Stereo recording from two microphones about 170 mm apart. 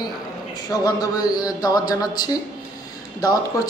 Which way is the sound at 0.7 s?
20° left (ahead or behind).